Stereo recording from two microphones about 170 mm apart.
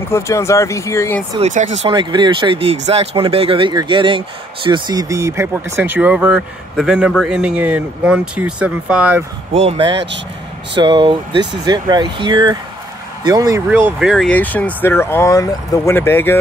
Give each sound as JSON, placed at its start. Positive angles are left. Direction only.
{"t": 0.1, "sound": "speech", "side_deg": 15}
{"t": 1.4, "sound": "speech", "side_deg": -45}
{"t": 1.9, "sound": "speech", "side_deg": -25}
{"t": 9.5, "sound": "speech", "side_deg": -35}
{"t": 13.7, "sound": "speech", "side_deg": -10}
{"t": 14.3, "sound": "speech", "side_deg": 10}